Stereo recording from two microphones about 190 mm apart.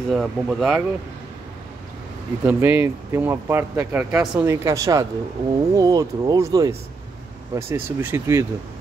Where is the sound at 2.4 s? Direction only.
10° right (ahead or behind).